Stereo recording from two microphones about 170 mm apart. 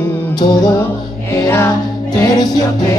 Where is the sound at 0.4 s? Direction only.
25° left (ahead or behind).